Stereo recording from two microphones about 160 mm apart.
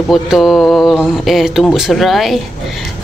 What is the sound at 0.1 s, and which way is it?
Speech, centre (ahead or behind).